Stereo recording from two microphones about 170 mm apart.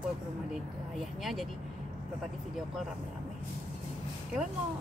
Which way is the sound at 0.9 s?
Centre (ahead or behind).